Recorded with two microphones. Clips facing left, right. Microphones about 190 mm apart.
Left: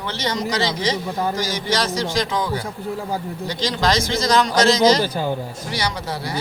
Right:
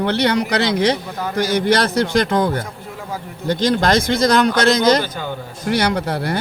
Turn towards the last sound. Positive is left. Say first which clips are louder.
# right 7 dB
turn(degrees=-60)  # may be behind; listen again after turning